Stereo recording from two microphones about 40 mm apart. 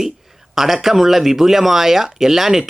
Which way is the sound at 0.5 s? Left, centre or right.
Centre.